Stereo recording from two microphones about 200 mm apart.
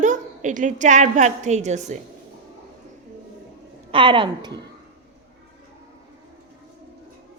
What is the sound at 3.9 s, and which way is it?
Speech, 25° right (ahead or behind).